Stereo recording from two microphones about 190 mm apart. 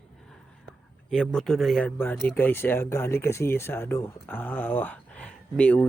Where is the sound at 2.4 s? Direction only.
10° left (ahead or behind).